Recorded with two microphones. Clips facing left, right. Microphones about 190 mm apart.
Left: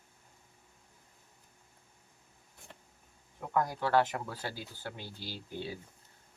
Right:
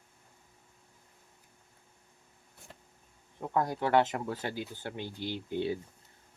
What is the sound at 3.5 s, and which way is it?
Speech, 25° right (ahead or behind).